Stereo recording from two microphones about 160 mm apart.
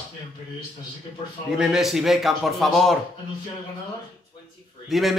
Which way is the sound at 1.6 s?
5° right (ahead or behind).